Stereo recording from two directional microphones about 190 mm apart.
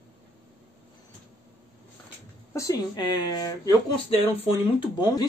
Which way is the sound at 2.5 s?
20° left (ahead or behind).